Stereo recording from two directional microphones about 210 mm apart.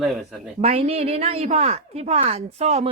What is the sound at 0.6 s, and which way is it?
A woman's voice, 30° right (ahead or behind).